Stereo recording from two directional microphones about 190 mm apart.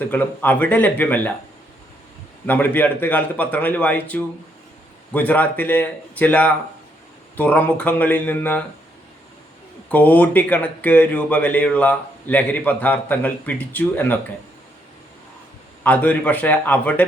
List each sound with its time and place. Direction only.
0.1 s speech: 10° left (ahead or behind)
2.5 s speech: 10° left (ahead or behind)
9.9 s speech: 5° left (ahead or behind)
15.8 s speech: 10° left (ahead or behind)